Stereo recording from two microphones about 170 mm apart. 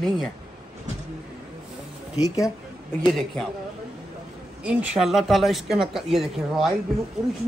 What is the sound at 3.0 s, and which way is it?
Speech, centre (ahead or behind).